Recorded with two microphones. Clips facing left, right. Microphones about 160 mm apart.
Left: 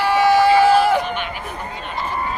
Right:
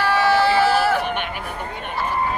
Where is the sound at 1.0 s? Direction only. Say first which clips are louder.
Even; 60° right (ahead or behind).